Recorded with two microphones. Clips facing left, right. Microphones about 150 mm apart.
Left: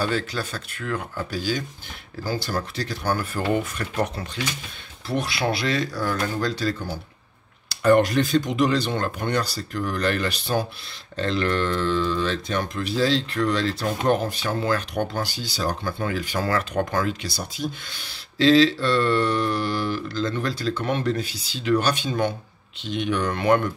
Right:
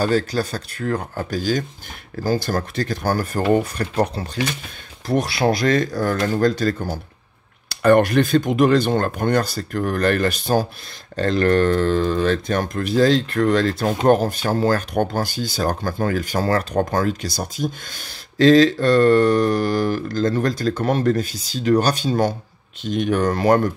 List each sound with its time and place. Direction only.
0.0 s speech: 40° right (ahead or behind)